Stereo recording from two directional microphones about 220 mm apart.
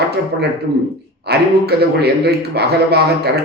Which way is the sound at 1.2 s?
45° right (ahead or behind).